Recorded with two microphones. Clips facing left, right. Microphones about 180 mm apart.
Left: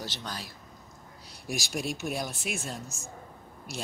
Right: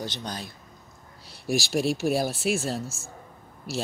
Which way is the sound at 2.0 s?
35° right (ahead or behind).